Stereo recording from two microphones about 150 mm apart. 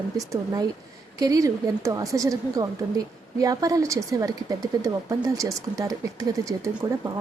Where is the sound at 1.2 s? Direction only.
25° right (ahead or behind).